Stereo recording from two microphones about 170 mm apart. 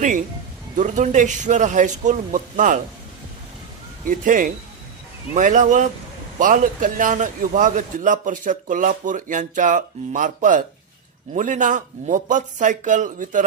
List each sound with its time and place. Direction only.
0.8 s a man's voice: 45° right (ahead or behind)
4.0 s a man's voice: 50° right (ahead or behind)